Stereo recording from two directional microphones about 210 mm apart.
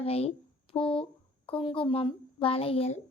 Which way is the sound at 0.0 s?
30° left (ahead or behind).